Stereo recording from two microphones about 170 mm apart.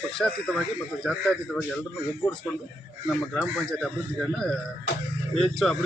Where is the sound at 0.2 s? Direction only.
5° left (ahead or behind).